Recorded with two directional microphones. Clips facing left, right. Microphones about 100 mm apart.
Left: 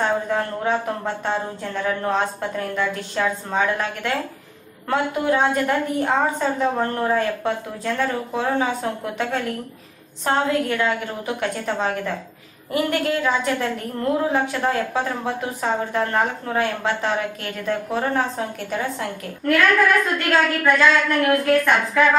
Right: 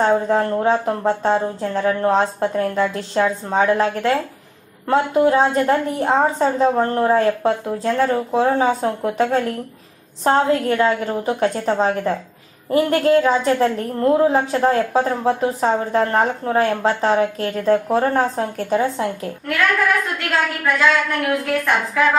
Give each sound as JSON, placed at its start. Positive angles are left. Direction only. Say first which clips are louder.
{"t": 0.0, "sound": "a woman's voice", "louder": "right 5 dB", "side_deg": -30}
{"t": 19.4, "sound": "a woman's voice", "louder": "left 2 dB", "side_deg": -5}